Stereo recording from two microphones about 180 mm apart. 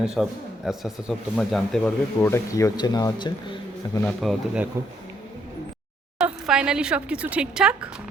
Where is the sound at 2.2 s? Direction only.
15° left (ahead or behind).